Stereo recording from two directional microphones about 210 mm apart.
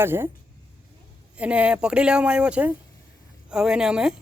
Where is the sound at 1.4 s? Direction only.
5° right (ahead or behind).